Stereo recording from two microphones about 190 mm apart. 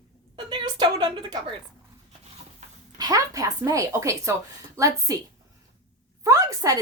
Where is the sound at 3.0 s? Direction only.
20° right (ahead or behind).